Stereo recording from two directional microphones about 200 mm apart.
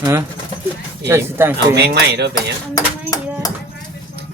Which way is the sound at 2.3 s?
15° left (ahead or behind).